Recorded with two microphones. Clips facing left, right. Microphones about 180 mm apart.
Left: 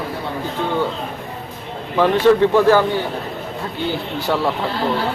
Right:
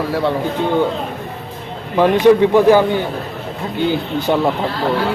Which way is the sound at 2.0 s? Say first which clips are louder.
Right 3 dB; 15° right (ahead or behind).